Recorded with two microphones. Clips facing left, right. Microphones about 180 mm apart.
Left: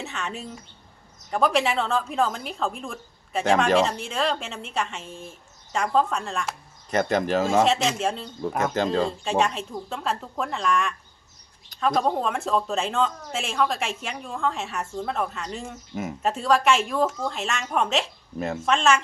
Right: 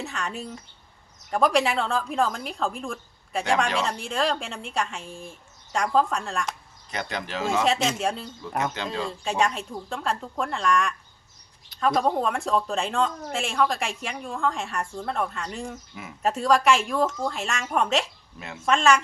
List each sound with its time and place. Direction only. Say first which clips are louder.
0.0 s speech: right 1 dB; centre (ahead or behind)
6.9 s speech: left 9 dB; 45° left (ahead or behind)
7.6 s speech: left 2 dB; centre (ahead or behind)
8.7 s speech: left 7 dB; 45° left (ahead or behind)
9.2 s speech: left 1 dB; centre (ahead or behind)
18.3 s speech: left 11 dB; 45° left (ahead or behind)
18.6 s speech: right 1 dB; centre (ahead or behind)